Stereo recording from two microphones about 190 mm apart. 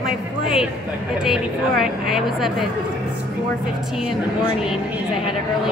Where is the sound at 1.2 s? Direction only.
Centre (ahead or behind).